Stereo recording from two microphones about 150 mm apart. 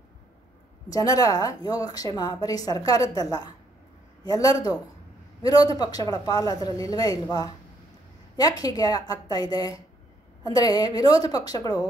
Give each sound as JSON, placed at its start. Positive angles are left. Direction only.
{"t": 0.8, "sound": "a woman's voice", "side_deg": 25}